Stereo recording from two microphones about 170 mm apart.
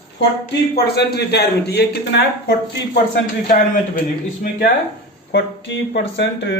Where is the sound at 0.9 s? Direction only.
75° left (ahead or behind).